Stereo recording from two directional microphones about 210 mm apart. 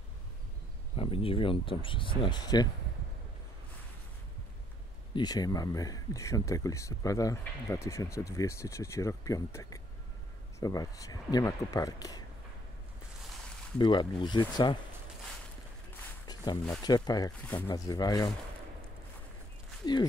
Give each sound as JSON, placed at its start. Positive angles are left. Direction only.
{"t": 0.9, "sound": "speech", "side_deg": 25}
{"t": 5.1, "sound": "speech", "side_deg": 20}
{"t": 13.7, "sound": "speech", "side_deg": 20}
{"t": 16.8, "sound": "speech", "side_deg": 20}
{"t": 19.8, "sound": "speech", "side_deg": 20}